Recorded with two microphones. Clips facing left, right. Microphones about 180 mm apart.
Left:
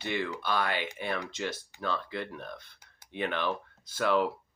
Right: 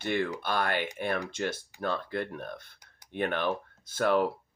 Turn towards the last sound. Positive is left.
turn(degrees=-50)  # may be behind; listen again after turning